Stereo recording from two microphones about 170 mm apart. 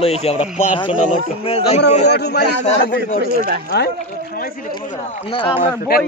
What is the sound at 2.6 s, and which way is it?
Speech, 45° left (ahead or behind).